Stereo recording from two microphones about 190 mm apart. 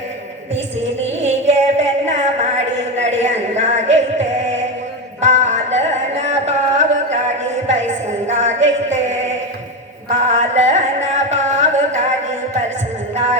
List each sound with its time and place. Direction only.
1.2 s a sound: 35° right (ahead or behind)
3.2 s music: 35° right (ahead or behind)
5.2 s music: 40° right (ahead or behind)
8.3 s music: 35° right (ahead or behind)
10.1 s carnatic music: 40° right (ahead or behind)